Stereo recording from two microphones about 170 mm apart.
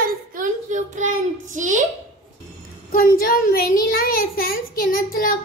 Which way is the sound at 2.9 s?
55° left (ahead or behind).